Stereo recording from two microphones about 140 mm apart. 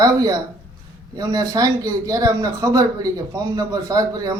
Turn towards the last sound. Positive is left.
turn(degrees=-25)  # may be behind; listen again after turning